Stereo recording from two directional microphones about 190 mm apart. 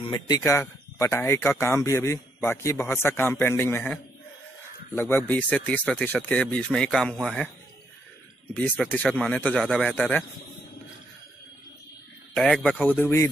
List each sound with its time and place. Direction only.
0.0 s speech: 25° left (ahead or behind); by 7.5 s 5° left (ahead or behind)
8.5 s speech: 5° left (ahead or behind)
12.4 s speech: 5° left (ahead or behind)